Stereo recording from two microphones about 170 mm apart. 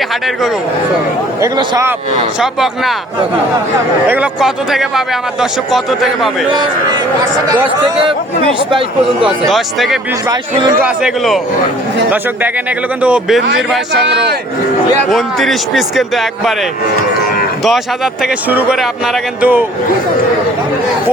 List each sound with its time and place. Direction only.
1.4 s speech: 20° right (ahead or behind)
2.4 s a man's voice: centre (ahead or behind)
4.1 s a man's voice: 5° right (ahead or behind)
6.5 s speech: 25° right (ahead or behind)
9.5 s a man's voice: centre (ahead or behind)
13.0 s a man's voice: 5° right (ahead or behind)
15.1 s a man's voice: centre (ahead or behind)
17.6 s a man's voice: centre (ahead or behind)